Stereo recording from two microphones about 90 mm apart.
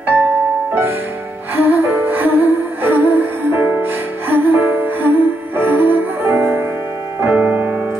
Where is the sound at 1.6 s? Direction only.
25° right (ahead or behind).